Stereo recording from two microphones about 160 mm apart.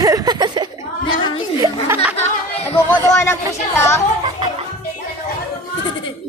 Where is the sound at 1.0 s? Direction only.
30° left (ahead or behind).